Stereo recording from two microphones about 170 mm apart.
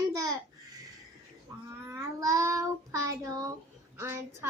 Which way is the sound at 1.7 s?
20° right (ahead or behind).